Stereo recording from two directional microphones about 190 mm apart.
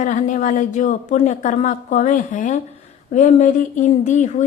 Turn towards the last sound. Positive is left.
turn(degrees=40)  # may be behind; listen again after turning